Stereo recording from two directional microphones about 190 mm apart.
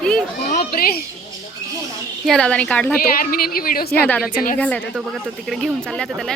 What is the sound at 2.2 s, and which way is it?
Speech, 5° left (ahead or behind).